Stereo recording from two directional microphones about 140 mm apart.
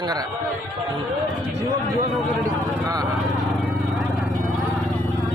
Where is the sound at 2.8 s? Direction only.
25° right (ahead or behind).